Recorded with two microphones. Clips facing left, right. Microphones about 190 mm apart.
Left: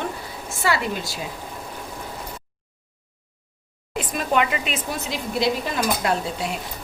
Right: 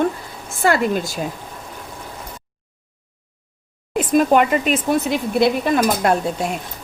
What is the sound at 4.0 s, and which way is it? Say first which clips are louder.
A woman's voice: right 8 dB; 45° right (ahead or behind).